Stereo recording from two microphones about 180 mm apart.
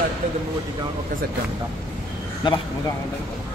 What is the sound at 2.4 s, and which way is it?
Speech, 25° left (ahead or behind).